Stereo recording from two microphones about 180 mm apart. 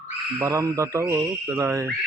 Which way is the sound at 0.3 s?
15° right (ahead or behind).